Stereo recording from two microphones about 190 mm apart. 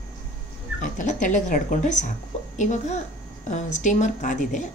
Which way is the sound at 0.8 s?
40° left (ahead or behind).